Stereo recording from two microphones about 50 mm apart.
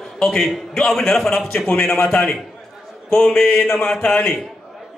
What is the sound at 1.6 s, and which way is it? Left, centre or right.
A man's voice, left.